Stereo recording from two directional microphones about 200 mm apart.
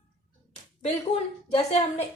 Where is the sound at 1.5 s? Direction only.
30° left (ahead or behind).